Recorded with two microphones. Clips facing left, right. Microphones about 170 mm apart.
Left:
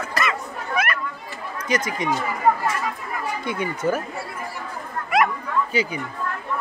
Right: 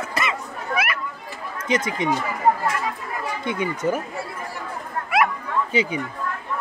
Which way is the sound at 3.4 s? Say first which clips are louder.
Right 1 dB; 20° right (ahead or behind).